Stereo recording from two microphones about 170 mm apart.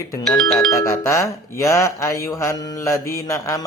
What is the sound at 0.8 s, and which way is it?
Speech, 15° left (ahead or behind).